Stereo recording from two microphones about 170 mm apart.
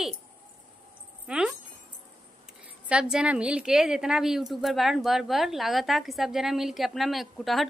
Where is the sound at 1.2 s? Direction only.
5° right (ahead or behind).